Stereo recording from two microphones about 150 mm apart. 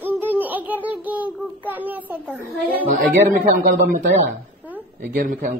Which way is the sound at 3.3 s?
80° right.